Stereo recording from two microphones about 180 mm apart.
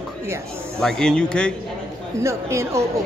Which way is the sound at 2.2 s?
15° right (ahead or behind).